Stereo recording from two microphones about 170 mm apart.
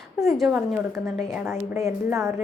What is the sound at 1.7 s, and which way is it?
Speech, 15° right (ahead or behind).